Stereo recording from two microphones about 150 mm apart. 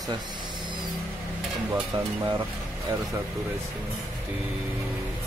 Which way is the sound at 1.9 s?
30° right (ahead or behind).